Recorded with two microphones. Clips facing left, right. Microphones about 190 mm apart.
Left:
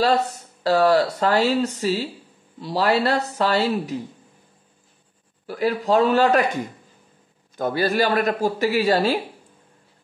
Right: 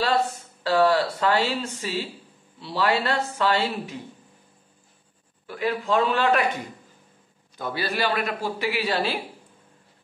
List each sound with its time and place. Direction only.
0.0 s speech: 40° left (ahead or behind)
5.5 s speech: 40° left (ahead or behind)
7.5 s speech: 45° left (ahead or behind)